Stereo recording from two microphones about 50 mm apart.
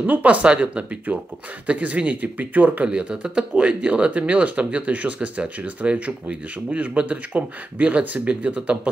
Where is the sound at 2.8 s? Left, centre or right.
Right.